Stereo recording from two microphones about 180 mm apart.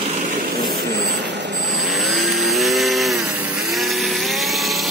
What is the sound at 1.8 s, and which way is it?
Chainsaw, centre (ahead or behind).